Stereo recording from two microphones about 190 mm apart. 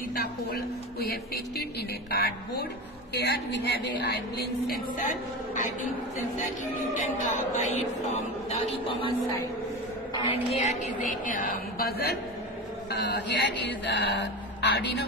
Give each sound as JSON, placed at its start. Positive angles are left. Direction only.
{"t": 0.1, "sound": "speech", "side_deg": 55}
{"t": 4.6, "sound": "speech", "side_deg": 40}